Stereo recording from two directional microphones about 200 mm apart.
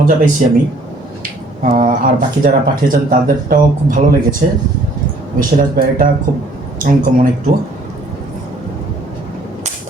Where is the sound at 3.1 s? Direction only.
45° right (ahead or behind).